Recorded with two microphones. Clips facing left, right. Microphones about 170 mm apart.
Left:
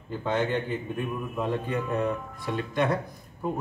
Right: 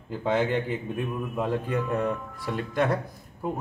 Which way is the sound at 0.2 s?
5° right (ahead or behind).